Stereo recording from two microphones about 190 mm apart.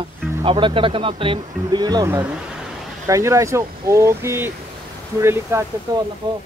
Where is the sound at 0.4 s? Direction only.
25° right (ahead or behind).